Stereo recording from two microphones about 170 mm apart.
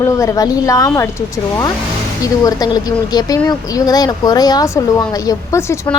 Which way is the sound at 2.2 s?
20° left (ahead or behind).